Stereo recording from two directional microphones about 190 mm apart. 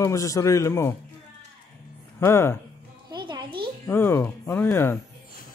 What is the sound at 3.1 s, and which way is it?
Music, 25° right (ahead or behind).